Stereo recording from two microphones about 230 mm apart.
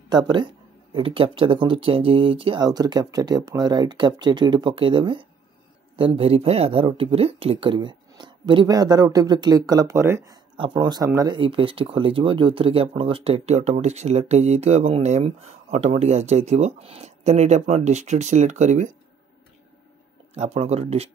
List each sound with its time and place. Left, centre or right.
0.1 s speech: centre
20.3 s speech: right